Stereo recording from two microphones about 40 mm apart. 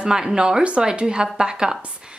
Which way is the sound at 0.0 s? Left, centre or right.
Centre.